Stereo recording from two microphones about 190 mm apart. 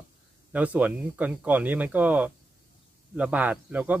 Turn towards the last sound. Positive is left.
turn(degrees=-10)  # may be behind; listen again after turning